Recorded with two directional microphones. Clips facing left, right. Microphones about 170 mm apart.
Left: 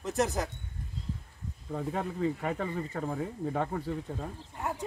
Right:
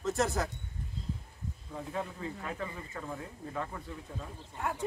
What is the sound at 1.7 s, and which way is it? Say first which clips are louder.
Speech: left 5 dB; 65° left (ahead or behind).